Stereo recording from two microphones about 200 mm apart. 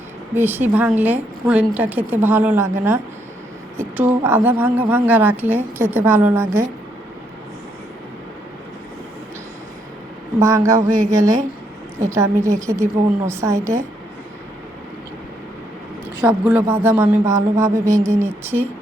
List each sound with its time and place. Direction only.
0.3 s a man's voice: 10° right (ahead or behind)
10.5 s a man's voice: 15° right (ahead or behind)
16.2 s a man's voice: 5° right (ahead or behind)